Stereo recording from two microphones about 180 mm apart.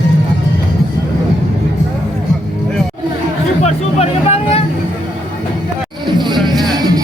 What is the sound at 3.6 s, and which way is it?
Music, 35° left (ahead or behind).